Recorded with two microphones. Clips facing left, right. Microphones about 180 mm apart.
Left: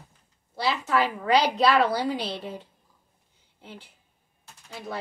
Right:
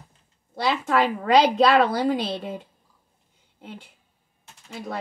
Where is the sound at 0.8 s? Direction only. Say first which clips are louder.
Right 3 dB; 55° right (ahead or behind).